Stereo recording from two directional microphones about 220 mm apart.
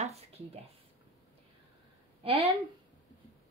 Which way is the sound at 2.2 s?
25° right (ahead or behind).